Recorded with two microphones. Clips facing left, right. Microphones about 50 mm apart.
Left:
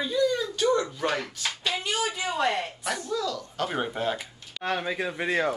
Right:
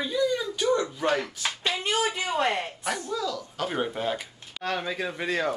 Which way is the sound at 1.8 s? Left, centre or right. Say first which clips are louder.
Right 4 dB; right.